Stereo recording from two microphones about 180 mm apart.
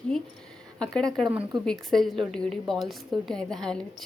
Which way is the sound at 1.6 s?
Centre (ahead or behind).